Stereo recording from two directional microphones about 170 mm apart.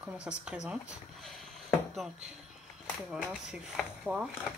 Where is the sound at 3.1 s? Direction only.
5° right (ahead or behind).